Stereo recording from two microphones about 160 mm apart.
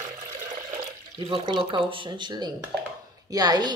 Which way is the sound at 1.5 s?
30° right (ahead or behind).